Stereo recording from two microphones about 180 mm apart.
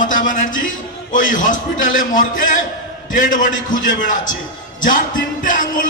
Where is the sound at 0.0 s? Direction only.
45° left (ahead or behind).